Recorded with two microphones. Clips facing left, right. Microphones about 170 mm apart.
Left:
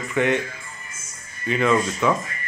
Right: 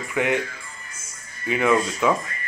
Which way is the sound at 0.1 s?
10° right (ahead or behind).